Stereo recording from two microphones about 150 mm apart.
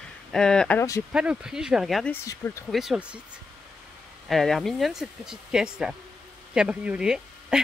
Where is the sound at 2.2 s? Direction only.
20° left (ahead or behind).